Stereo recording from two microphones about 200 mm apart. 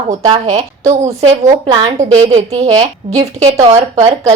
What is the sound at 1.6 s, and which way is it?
Speech, 20° right (ahead or behind).